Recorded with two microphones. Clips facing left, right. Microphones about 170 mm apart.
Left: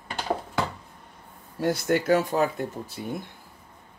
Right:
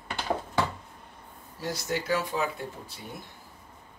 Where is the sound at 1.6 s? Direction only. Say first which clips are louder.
Left 8 dB; 55° left (ahead or behind).